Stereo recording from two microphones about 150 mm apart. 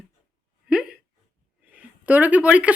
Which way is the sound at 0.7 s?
5° right (ahead or behind).